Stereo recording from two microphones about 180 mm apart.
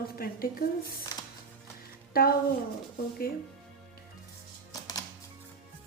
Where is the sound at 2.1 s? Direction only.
55° left (ahead or behind).